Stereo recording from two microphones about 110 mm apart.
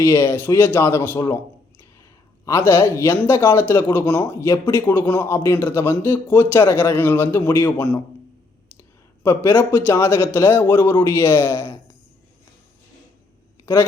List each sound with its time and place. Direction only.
0.0 s speech: 20° left (ahead or behind)
2.4 s speech: 25° left (ahead or behind)
9.2 s speech: 20° left (ahead or behind)